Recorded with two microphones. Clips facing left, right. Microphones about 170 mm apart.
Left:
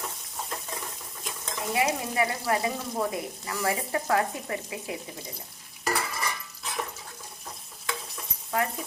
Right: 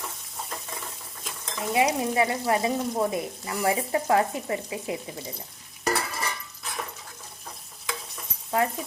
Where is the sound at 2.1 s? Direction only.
25° right (ahead or behind).